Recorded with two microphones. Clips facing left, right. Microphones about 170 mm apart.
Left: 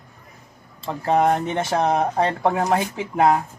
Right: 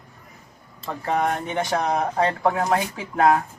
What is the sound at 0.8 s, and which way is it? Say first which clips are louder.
Speech: left 5 dB; 30° left (ahead or behind).